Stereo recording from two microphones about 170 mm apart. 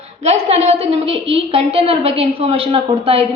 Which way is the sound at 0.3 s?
40° right (ahead or behind).